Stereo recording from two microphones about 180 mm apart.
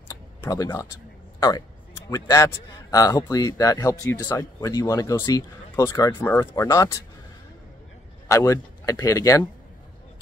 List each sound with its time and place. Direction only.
0.1 s a sound: 20° left (ahead or behind)
1.4 s a man's voice: 20° left (ahead or behind)
8.3 s a man's voice: 15° left (ahead or behind)